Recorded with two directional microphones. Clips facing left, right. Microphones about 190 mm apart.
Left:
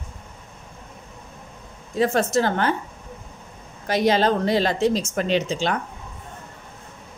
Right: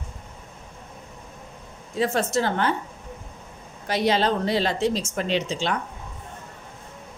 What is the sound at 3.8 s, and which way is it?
Speech, 45° left (ahead or behind).